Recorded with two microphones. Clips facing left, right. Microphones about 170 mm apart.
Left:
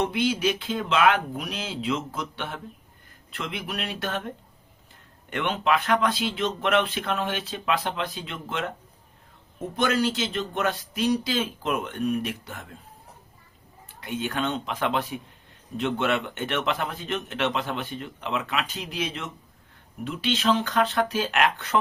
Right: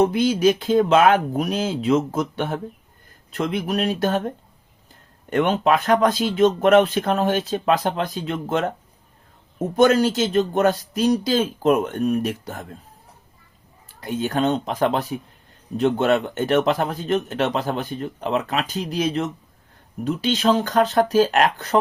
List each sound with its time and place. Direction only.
0.0 s speech: 40° right (ahead or behind)
5.3 s speech: 40° right (ahead or behind)
9.7 s speech: 45° right (ahead or behind)
13.8 s speech: 40° right (ahead or behind)